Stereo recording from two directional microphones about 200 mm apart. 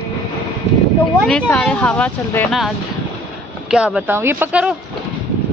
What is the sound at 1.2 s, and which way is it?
Speech, 5° left (ahead or behind).